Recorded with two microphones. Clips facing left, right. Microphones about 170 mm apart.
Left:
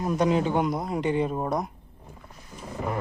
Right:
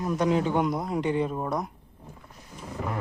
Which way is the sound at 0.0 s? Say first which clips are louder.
Left 1 dB; 20° left (ahead or behind).